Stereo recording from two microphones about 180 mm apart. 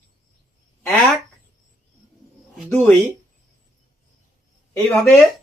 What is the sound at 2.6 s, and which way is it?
Speech, 10° left (ahead or behind).